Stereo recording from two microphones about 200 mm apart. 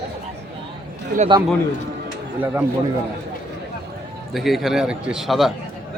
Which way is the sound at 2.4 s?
10° right (ahead or behind).